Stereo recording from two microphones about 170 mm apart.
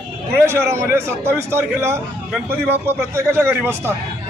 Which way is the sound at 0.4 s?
15° right (ahead or behind).